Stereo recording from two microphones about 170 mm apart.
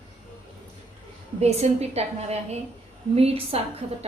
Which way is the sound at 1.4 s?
40° right (ahead or behind).